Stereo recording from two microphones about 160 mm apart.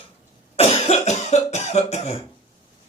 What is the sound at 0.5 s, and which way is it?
Cough, 40° left (ahead or behind).